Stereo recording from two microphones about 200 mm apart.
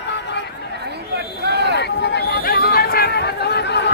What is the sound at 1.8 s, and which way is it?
Chatter, 55° left (ahead or behind).